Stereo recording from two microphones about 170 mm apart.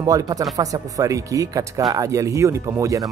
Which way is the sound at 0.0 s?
20° right (ahead or behind).